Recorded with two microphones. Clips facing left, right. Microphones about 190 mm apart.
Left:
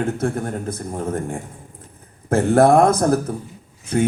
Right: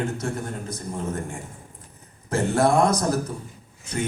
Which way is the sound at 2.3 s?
55° left (ahead or behind).